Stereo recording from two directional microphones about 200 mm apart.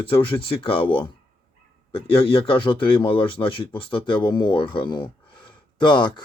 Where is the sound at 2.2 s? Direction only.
25° left (ahead or behind).